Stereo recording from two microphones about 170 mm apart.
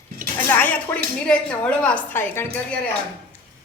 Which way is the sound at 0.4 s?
10° left (ahead or behind).